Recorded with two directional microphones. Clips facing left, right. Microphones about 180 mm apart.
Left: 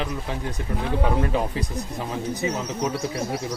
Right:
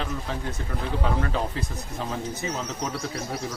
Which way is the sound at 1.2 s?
15° left (ahead or behind).